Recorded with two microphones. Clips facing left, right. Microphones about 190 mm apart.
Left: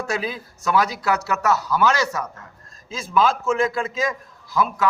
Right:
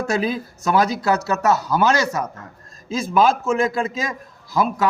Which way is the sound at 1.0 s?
35° right (ahead or behind).